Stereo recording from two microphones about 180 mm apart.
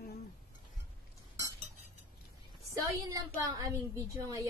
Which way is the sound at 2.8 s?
20° right (ahead or behind).